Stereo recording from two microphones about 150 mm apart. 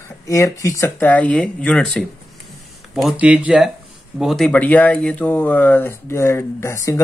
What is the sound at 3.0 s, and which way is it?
Speech, 10° right (ahead or behind).